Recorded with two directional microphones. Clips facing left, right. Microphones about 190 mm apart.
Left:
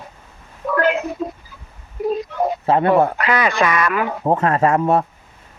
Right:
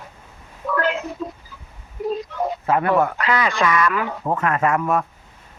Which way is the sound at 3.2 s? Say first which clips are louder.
Left 3 dB; 65° left (ahead or behind).